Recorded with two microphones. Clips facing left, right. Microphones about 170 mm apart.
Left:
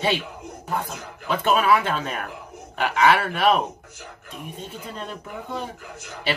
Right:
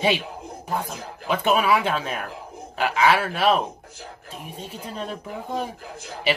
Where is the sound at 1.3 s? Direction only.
10° right (ahead or behind).